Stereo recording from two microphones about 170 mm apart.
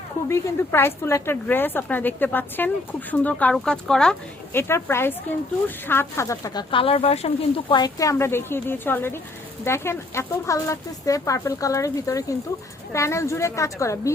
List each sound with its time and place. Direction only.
0.3 s speech: 15° left (ahead or behind)
4.7 s speech: 15° left (ahead or behind)